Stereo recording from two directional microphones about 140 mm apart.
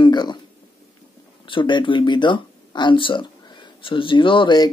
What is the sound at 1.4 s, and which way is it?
Speech, 35° left (ahead or behind).